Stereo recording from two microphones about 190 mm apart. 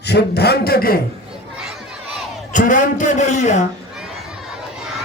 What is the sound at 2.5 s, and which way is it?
A man's voice, 40° left (ahead or behind).